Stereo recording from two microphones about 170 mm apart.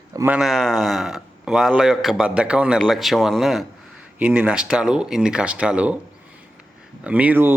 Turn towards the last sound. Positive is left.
turn(degrees=-10)  # may be behind; listen again after turning